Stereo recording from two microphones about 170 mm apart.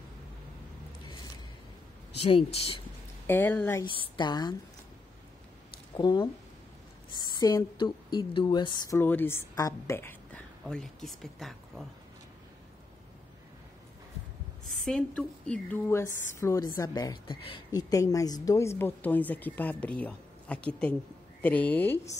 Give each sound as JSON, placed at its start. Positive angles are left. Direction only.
{"t": 2.2, "sound": "speech", "side_deg": 35}
{"t": 3.3, "sound": "a woman's voice", "side_deg": 10}
{"t": 3.8, "sound": "a woman's voice", "side_deg": 30}
{"t": 5.9, "sound": "a woman's voice", "side_deg": 25}
{"t": 8.9, "sound": "a woman's voice", "side_deg": 10}
{"t": 14.8, "sound": "a woman's voice", "side_deg": 5}